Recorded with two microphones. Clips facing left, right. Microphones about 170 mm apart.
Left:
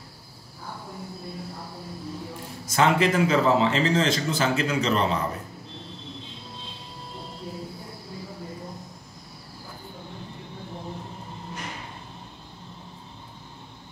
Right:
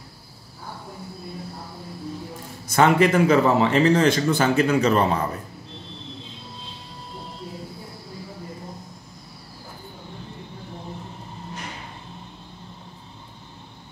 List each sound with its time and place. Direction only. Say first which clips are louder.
2.7 s a man's voice: right 4 dB; 55° right (ahead or behind)